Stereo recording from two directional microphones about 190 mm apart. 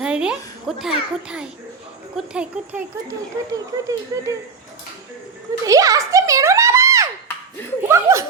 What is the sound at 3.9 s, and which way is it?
Speech, 15° right (ahead or behind).